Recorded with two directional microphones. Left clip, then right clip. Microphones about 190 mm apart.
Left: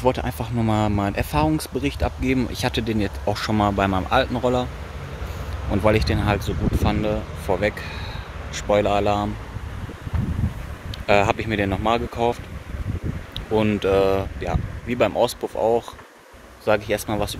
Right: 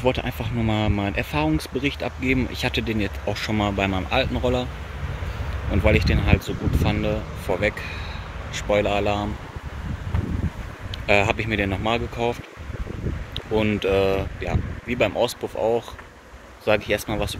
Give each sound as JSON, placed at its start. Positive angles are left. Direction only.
{"t": 0.0, "sound": "speech", "side_deg": 10}
{"t": 5.7, "sound": "speech", "side_deg": 15}
{"t": 11.1, "sound": "speech", "side_deg": 15}